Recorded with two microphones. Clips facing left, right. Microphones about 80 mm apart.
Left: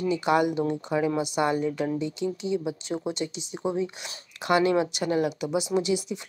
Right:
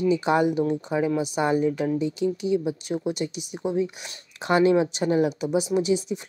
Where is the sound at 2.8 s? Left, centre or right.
Left.